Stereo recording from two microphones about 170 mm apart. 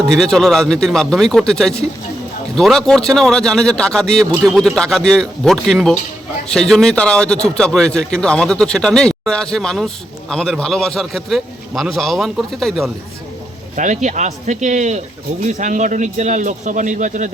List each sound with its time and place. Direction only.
0.2 s a man's voice: 5° left (ahead or behind)
13.7 s a man's voice: 45° right (ahead or behind)